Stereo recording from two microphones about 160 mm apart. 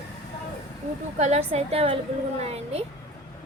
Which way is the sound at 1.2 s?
45° right (ahead or behind).